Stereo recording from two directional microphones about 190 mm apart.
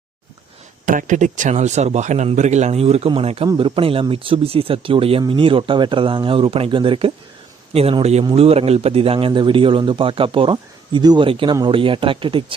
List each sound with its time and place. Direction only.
0.9 s a man's voice: 40° right (ahead or behind); by 12.5 s 25° right (ahead or behind)